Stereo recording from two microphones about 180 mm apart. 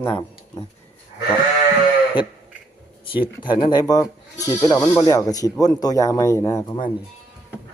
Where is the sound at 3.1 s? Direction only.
30° left (ahead or behind).